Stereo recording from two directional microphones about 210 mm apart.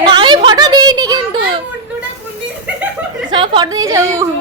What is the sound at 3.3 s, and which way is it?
Speech, 20° right (ahead or behind).